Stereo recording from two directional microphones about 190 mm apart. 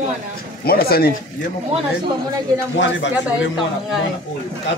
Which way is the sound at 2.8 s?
70° left (ahead or behind).